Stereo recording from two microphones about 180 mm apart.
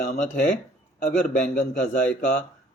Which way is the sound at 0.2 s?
40° left (ahead or behind).